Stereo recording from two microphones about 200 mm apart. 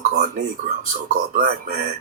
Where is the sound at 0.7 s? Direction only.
40° right (ahead or behind).